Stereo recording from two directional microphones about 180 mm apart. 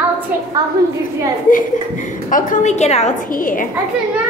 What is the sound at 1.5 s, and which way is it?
A woman's voice, 45° left (ahead or behind).